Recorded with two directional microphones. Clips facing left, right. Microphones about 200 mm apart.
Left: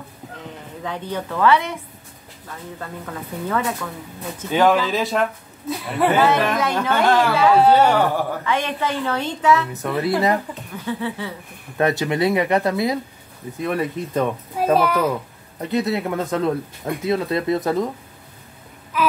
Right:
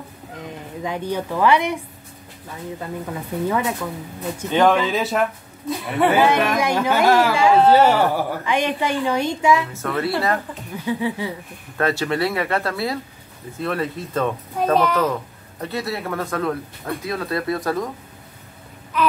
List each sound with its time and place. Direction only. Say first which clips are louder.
0.8 s a woman's voice: right 2 dB; 10° right (ahead or behind)
2.8 s a woman's voice: right 2 dB; 15° right (ahead or behind)
4.5 s speech: even; 5° left (ahead or behind)
6.2 s a woman's voice: even; 10° right (ahead or behind)
9.7 s speech: left 2 dB; 20° left (ahead or behind)
10.9 s a woman's voice: right 3 dB; 15° right (ahead or behind)
11.7 s a child's voice: left 1 dB; 20° left (ahead or behind)
18.9 s speech: right 1 dB; 5° left (ahead or behind)